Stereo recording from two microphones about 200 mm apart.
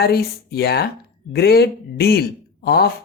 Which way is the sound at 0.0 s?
50° left (ahead or behind).